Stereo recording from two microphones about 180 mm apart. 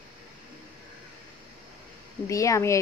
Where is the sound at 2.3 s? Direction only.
20° left (ahead or behind).